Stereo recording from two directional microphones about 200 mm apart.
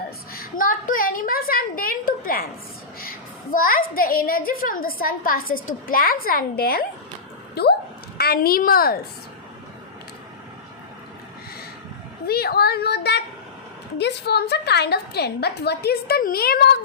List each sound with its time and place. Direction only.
0.3 s a woman's voice: 45° left (ahead or behind)
7.5 s a sound: 55° left (ahead or behind)
8.2 s a woman's voice: 50° left (ahead or behind)
12.2 s a woman's voice: 50° left (ahead or behind)